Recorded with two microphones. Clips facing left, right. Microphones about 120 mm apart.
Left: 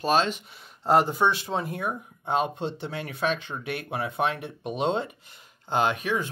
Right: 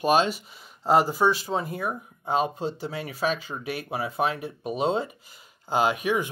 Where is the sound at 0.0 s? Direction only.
10° right (ahead or behind).